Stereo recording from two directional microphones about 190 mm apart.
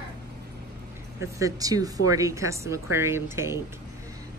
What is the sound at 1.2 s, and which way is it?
Speech, 15° right (ahead or behind).